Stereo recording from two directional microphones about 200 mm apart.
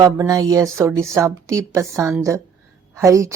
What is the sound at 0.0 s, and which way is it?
Speech, 15° right (ahead or behind).